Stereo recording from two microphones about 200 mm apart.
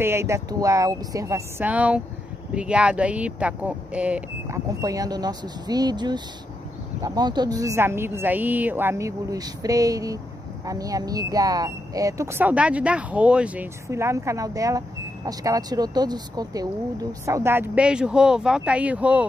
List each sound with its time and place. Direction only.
0.0 s speech: 15° right (ahead or behind)
4.6 s speech: 15° right (ahead or behind)